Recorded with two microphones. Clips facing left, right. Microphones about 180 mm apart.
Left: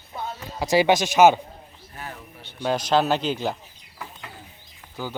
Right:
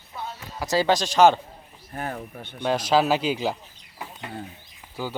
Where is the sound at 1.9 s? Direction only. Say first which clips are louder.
Right 7 dB; 50° right (ahead or behind).